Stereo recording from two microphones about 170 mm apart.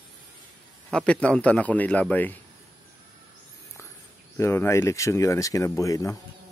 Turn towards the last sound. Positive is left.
turn(degrees=20)  # may be behind; listen again after turning